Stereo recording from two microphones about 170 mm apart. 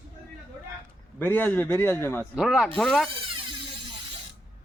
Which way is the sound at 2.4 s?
Centre (ahead or behind).